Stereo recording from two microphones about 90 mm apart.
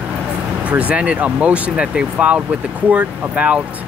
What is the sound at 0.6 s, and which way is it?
Speech, 15° right (ahead or behind).